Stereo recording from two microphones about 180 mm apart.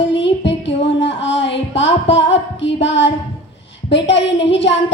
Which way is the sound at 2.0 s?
90° left.